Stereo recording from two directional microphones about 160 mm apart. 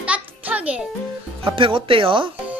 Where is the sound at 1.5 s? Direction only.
30° right (ahead or behind).